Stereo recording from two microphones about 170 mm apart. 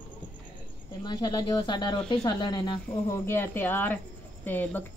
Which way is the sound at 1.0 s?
25° left (ahead or behind).